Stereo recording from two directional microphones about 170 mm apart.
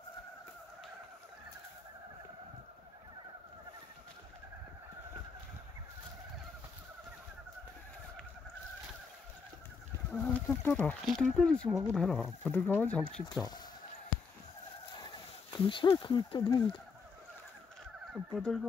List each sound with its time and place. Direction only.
10.1 s speech: 10° left (ahead or behind)
13.3 s speech: 25° left (ahead or behind)
15.5 s speech: 30° left (ahead or behind)
18.3 s fowl: 5° left (ahead or behind)